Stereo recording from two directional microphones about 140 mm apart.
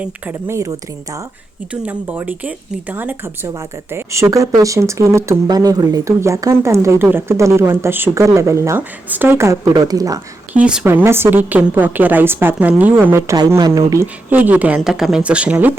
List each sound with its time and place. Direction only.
0.0 s speech: 15° right (ahead or behind)
1.7 s a woman's voice: 10° right (ahead or behind); by 10.2 s 25° right (ahead or behind)
10.5 s a woman's voice: 5° right (ahead or behind)